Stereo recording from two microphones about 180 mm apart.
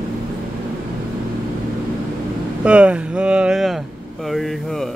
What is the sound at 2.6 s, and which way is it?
Speech, 5° right (ahead or behind).